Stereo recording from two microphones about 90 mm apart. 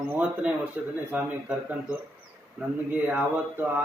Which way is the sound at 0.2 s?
15° right (ahead or behind).